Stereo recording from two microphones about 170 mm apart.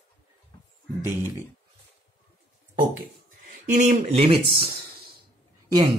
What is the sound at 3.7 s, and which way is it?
Speech, 40° right (ahead or behind).